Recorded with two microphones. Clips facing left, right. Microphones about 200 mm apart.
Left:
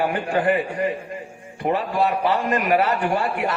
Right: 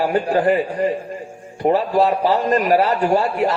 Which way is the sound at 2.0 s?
30° right (ahead or behind).